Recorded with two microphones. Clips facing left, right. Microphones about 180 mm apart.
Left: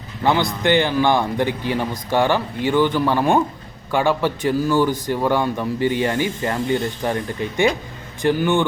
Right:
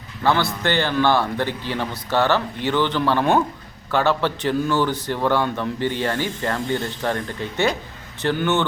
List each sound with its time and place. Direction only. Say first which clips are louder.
0.2 s a man's voice: left 1 dB; 15° left (ahead or behind)